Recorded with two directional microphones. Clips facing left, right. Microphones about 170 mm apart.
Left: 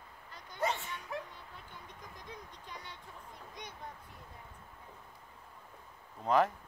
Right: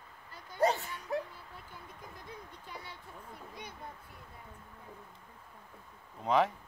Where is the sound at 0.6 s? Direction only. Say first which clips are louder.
Right 6 dB; 40° right (ahead or behind).